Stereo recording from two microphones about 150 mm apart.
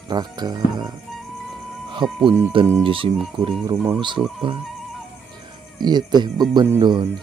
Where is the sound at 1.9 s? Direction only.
35° right (ahead or behind).